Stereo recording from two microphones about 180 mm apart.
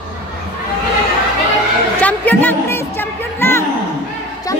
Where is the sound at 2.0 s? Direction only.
10° left (ahead or behind).